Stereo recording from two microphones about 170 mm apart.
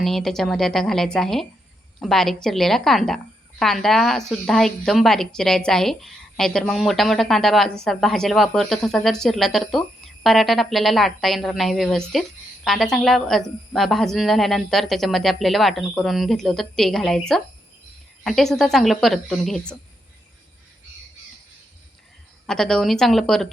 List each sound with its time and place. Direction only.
0.0 s a woman's voice: centre (ahead or behind)
22.4 s a woman's voice: 5° left (ahead or behind)